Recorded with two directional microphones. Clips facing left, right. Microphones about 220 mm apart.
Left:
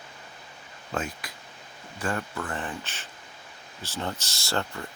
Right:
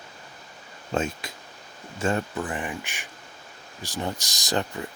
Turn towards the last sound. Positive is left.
turn(degrees=-15)  # may be behind; listen again after turning